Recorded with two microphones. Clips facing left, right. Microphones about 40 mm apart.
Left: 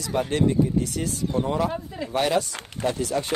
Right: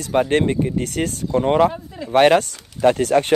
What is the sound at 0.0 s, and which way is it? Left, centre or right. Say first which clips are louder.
Speech: right 5 dB; right.